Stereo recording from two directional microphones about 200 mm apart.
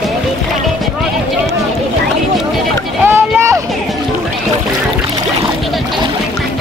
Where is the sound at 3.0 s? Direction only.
10° right (ahead or behind).